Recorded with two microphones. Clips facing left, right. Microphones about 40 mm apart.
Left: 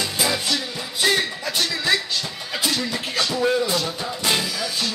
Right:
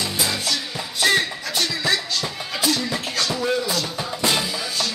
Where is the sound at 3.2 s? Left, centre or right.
Centre.